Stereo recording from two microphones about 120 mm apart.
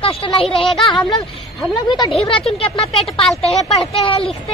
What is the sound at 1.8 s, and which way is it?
Speech, 40° left (ahead or behind).